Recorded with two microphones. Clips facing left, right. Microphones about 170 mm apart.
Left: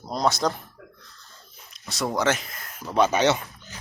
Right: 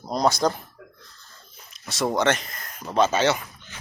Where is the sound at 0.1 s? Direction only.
Centre (ahead or behind).